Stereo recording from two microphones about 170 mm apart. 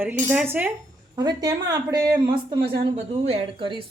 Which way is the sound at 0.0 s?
10° right (ahead or behind).